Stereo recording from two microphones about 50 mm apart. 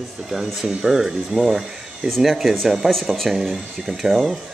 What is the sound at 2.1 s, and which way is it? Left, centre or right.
Speech, centre.